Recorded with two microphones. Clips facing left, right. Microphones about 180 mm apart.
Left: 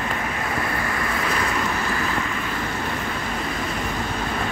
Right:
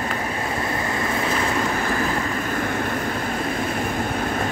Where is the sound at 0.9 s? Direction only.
25° right (ahead or behind).